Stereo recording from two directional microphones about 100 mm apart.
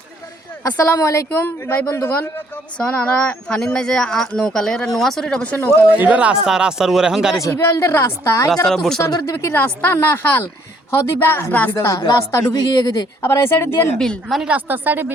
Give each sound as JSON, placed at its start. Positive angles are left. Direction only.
{"t": 0.6, "sound": "speech", "side_deg": 30}
{"t": 2.7, "sound": "speech", "side_deg": 15}
{"t": 6.0, "sound": "speech", "side_deg": -15}
{"t": 7.4, "sound": "speech", "side_deg": 30}
{"t": 8.6, "sound": "speech", "side_deg": 5}
{"t": 9.0, "sound": "speech", "side_deg": 35}
{"t": 9.6, "sound": "speech", "side_deg": 20}
{"t": 12.5, "sound": "speech", "side_deg": 45}
{"t": 13.2, "sound": "speech", "side_deg": 25}
{"t": 14.0, "sound": "speech", "side_deg": 5}
{"t": 14.5, "sound": "speech", "side_deg": -20}